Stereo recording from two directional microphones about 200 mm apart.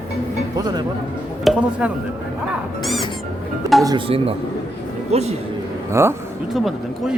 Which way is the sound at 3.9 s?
25° right (ahead or behind).